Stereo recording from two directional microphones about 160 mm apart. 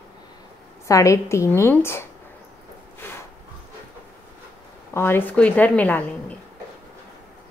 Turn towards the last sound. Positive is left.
turn(degrees=10)  # may be behind; listen again after turning